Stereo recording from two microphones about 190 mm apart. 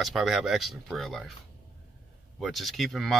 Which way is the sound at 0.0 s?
Centre (ahead or behind).